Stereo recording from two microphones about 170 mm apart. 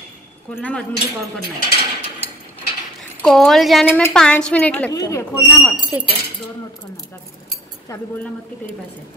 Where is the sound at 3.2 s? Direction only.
Centre (ahead or behind).